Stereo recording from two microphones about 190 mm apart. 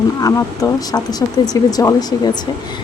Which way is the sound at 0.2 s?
20° left (ahead or behind).